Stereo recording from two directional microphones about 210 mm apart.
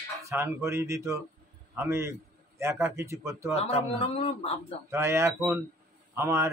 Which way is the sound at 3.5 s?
30° left (ahead or behind).